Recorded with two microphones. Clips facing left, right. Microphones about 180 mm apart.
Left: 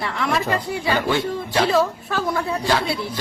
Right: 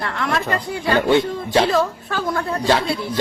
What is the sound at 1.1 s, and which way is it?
Speech, 25° right (ahead or behind).